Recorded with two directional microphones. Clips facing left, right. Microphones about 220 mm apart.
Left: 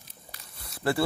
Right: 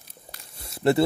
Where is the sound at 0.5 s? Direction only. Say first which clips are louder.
Right 7 dB; 25° right (ahead or behind).